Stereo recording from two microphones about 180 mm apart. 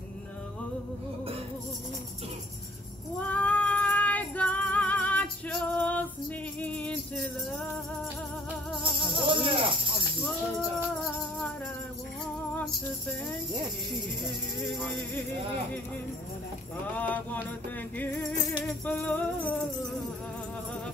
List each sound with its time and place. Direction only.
3.2 s female singing: 10° left (ahead or behind)
6.6 s music: 10° left (ahead or behind)
9.0 s music: 30° right (ahead or behind)
11.1 s music: centre (ahead or behind)
14.8 s music: 5° left (ahead or behind)
16.9 s music: 10° left (ahead or behind)
18.6 s music: 10° left (ahead or behind)